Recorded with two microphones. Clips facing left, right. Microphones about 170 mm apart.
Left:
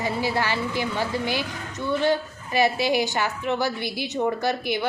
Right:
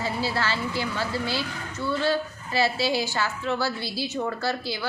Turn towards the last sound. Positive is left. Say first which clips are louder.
# left 4 dB
turn(degrees=20)  # may be behind; listen again after turning